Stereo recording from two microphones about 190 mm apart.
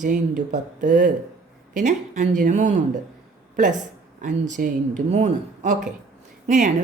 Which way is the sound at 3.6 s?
40° right (ahead or behind).